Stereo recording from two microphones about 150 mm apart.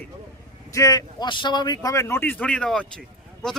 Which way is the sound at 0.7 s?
25° left (ahead or behind).